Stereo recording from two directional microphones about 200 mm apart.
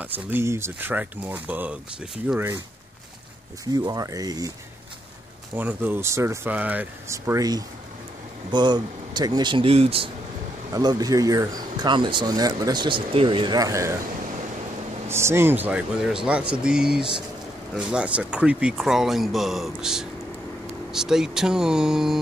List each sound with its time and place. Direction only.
0.0 s speech: 10° right (ahead or behind)
3.7 s speech: 20° right (ahead or behind)
5.6 s speech: 10° right (ahead or behind)
15.0 s speech: 15° right (ahead or behind)